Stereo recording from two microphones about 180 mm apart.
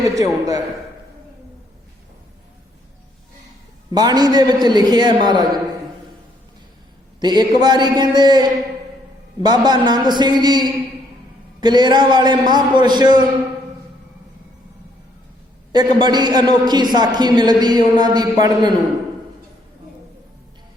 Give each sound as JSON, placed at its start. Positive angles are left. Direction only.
{"t": 0.0, "sound": "a man's voice", "side_deg": -20}
{"t": 3.9, "sound": "a man's voice", "side_deg": -20}
{"t": 7.2, "sound": "a man's voice", "side_deg": -25}
{"t": 15.7, "sound": "a man's voice", "side_deg": -25}